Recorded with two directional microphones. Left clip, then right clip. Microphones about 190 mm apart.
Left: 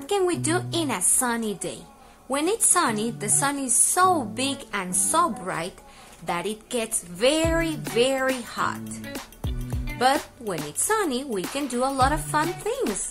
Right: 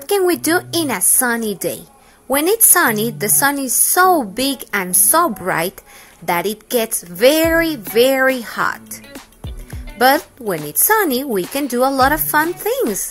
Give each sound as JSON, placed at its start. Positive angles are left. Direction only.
{"t": 0.1, "sound": "a woman's voice", "side_deg": -25}
{"t": 9.9, "sound": "a woman's voice", "side_deg": -30}